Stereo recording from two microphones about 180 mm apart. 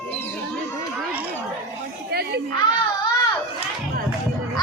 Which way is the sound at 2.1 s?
65° right (ahead or behind).